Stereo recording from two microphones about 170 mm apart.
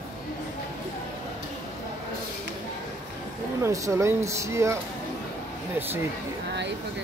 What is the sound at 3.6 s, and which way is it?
Speech, 20° right (ahead or behind).